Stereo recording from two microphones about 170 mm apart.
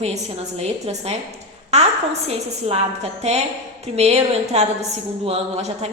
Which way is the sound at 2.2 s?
40° right (ahead or behind).